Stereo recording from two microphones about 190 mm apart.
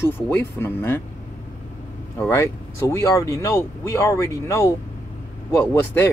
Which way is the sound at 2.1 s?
15° left (ahead or behind).